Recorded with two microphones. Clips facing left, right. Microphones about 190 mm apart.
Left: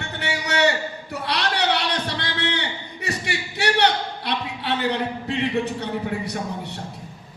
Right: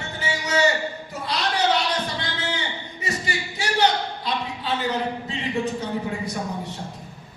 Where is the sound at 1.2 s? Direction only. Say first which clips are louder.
Right 1 dB; 70° left (ahead or behind).